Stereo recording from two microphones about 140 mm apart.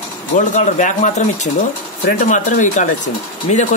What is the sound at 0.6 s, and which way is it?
Speech, 65° left (ahead or behind).